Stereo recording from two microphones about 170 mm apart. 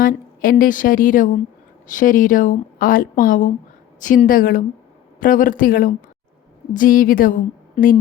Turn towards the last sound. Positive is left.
turn(degrees=50)  # may be behind; listen again after turning